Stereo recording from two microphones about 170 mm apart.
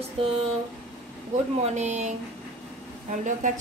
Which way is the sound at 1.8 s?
45° right (ahead or behind).